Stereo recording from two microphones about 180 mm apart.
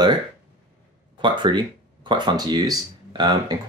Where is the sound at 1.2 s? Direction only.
25° right (ahead or behind).